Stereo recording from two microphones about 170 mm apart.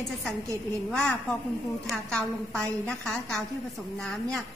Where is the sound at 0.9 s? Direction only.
5° left (ahead or behind).